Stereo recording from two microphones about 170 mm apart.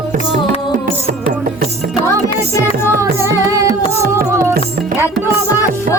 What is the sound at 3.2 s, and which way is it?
Music, 20° right (ahead or behind).